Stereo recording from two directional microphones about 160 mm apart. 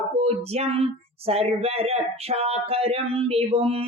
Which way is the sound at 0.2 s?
40° right (ahead or behind).